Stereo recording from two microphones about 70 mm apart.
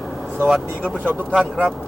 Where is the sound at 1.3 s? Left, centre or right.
Centre.